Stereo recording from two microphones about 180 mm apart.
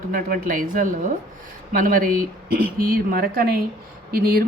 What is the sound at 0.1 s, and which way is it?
Speech, 50° right (ahead or behind).